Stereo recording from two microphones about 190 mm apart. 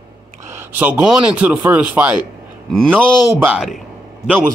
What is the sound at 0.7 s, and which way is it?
Speech, 10° right (ahead or behind).